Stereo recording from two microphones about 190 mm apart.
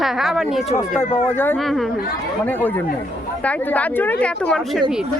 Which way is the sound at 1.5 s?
Centre (ahead or behind).